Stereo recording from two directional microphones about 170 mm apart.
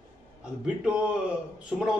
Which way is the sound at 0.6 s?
5° right (ahead or behind).